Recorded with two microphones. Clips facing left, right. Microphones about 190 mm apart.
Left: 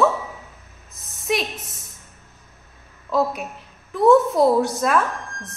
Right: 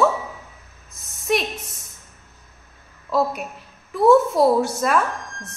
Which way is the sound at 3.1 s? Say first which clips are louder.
Even; centre (ahead or behind).